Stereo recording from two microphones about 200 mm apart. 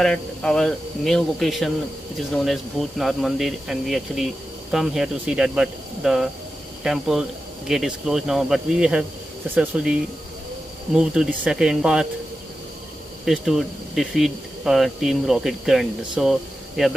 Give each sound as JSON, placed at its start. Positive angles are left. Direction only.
{"t": 0.0, "sound": "speech", "side_deg": 5}
{"t": 11.0, "sound": "speech", "side_deg": -5}
{"t": 13.2, "sound": "speech", "side_deg": 0}